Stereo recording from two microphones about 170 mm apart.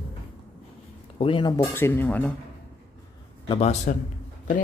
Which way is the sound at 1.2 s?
25° left (ahead or behind).